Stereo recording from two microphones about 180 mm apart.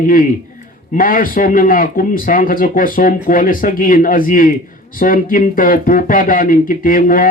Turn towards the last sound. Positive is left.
turn(degrees=50)  # may be behind; listen again after turning